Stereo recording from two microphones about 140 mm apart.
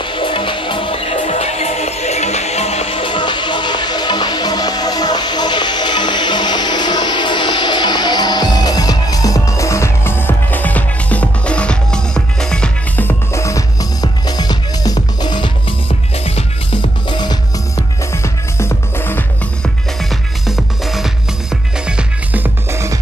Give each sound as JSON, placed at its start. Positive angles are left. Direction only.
{"t": 0.0, "sound": "music", "side_deg": 40}
{"t": 16.3, "sound": "music", "side_deg": 45}
{"t": 17.1, "sound": "music", "side_deg": 30}
{"t": 18.1, "sound": "music", "side_deg": 20}
{"t": 20.0, "sound": "music", "side_deg": 0}